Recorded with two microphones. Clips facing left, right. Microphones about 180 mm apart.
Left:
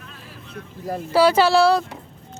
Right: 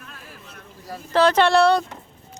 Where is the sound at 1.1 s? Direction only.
10° left (ahead or behind).